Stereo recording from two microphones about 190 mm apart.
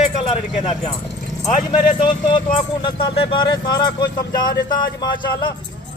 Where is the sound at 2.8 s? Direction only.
30° left (ahead or behind).